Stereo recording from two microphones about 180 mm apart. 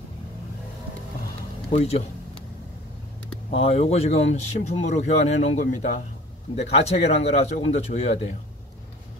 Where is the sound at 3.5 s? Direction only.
35° left (ahead or behind).